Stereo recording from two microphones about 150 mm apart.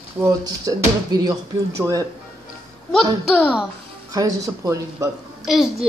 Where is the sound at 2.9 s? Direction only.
10° left (ahead or behind).